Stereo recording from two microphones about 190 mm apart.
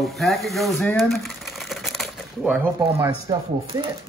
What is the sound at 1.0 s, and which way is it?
Typewriter, centre (ahead or behind).